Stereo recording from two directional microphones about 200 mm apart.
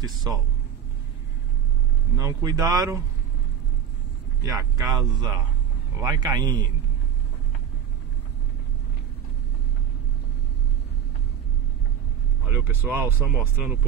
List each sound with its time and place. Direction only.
0.0 s speech: 20° right (ahead or behind)
2.1 s speech: 20° right (ahead or behind)
4.5 s speech: 15° right (ahead or behind)
12.4 s speech: 10° right (ahead or behind)